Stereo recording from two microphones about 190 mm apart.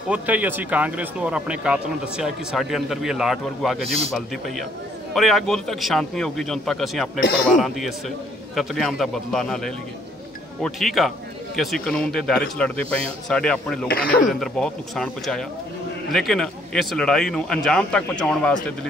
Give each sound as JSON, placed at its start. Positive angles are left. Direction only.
{"t": 0.1, "sound": "speech", "side_deg": -10}
{"t": 3.8, "sound": "a man's voice", "side_deg": -30}
{"t": 5.1, "sound": "speech", "side_deg": 0}
{"t": 13.8, "sound": "speech", "side_deg": 50}
{"t": 14.3, "sound": "speech", "side_deg": 0}